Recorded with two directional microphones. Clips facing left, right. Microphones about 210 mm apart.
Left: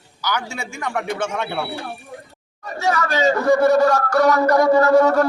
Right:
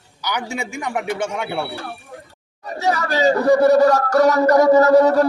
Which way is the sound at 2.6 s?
35° right (ahead or behind).